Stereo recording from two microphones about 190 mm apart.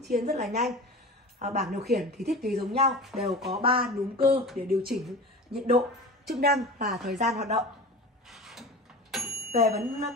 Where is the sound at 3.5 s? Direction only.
30° right (ahead or behind).